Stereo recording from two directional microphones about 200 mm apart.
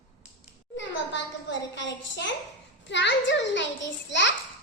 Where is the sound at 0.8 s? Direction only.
65° left (ahead or behind).